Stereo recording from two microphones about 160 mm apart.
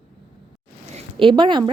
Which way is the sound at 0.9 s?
30° right (ahead or behind).